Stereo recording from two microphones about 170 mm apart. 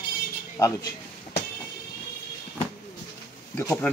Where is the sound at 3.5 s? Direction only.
10° left (ahead or behind).